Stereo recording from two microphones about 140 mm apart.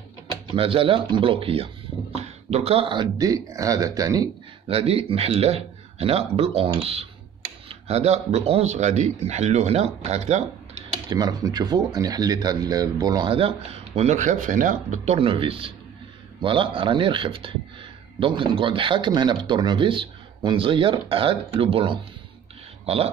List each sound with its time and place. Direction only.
0.6 s speech: 40° right (ahead or behind); by 4.3 s 25° right (ahead or behind)
4.6 s speech: 45° right (ahead or behind)
11.1 s speech: 25° right (ahead or behind); by 15.1 s 65° right (ahead or behind)
15.1 s speech: 40° right (ahead or behind)